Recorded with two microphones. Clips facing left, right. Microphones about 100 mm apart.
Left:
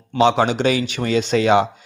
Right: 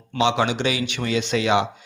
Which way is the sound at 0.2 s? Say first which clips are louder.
Left 5 dB; 40° left (ahead or behind).